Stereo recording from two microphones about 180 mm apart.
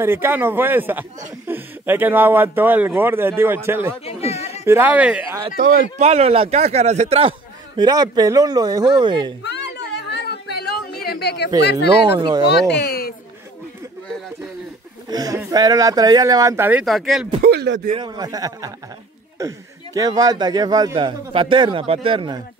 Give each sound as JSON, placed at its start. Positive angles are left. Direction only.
{"t": 0.0, "sound": "speech", "side_deg": -10}
{"t": 4.0, "sound": "speech", "side_deg": 35}
{"t": 4.6, "sound": "speech", "side_deg": -10}
{"t": 5.6, "sound": "speech", "side_deg": -55}
{"t": 5.9, "sound": "a man's voice", "side_deg": -35}
{"t": 9.4, "sound": "a sound", "side_deg": 70}
{"t": 12.2, "sound": "a man's voice", "side_deg": -25}
{"t": 12.7, "sound": "a sound", "side_deg": 60}
{"t": 15.0, "sound": "a man's voice", "side_deg": -20}
{"t": 16.8, "sound": "speech", "side_deg": 0}
{"t": 17.4, "sound": "speech", "side_deg": -70}
{"t": 17.9, "sound": "a man's voice", "side_deg": -25}